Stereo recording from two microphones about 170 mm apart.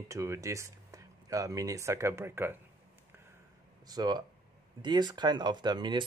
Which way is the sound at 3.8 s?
25° right (ahead or behind).